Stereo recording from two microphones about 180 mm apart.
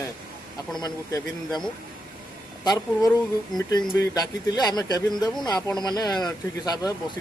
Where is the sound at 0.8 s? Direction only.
20° left (ahead or behind).